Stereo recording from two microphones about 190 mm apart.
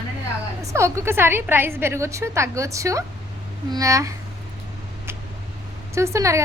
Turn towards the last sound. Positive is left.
turn(degrees=-15)  # may be behind; listen again after turning